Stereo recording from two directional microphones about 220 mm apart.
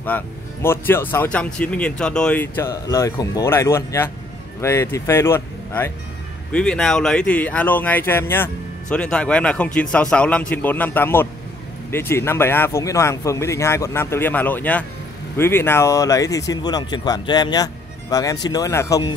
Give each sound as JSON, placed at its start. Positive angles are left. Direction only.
{"t": 0.0, "sound": "a man's voice", "side_deg": 10}